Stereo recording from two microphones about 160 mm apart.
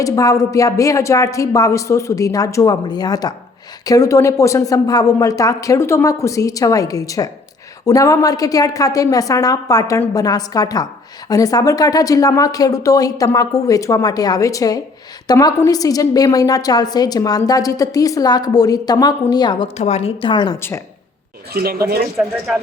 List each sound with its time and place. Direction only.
0.0 s a woman's voice: 20° left (ahead or behind)
19.7 s a woman's voice: 45° left (ahead or behind)
20.6 s speech: 15° left (ahead or behind)
21.5 s speech: 70° right (ahead or behind)